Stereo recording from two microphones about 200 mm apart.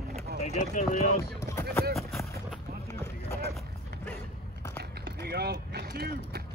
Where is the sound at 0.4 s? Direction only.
35° left (ahead or behind).